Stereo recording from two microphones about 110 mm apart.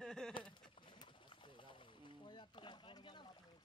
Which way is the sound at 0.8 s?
45° left (ahead or behind).